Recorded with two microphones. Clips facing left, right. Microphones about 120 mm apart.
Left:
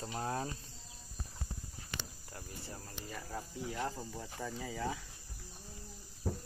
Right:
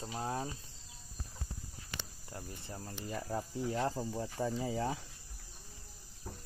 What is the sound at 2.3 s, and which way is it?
Speech, 25° right (ahead or behind).